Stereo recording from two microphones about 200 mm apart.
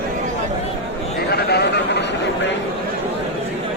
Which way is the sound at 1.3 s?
55° left (ahead or behind).